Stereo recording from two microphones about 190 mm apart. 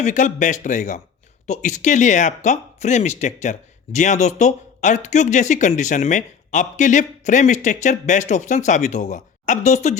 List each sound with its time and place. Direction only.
0.0 s speech: 40° left (ahead or behind)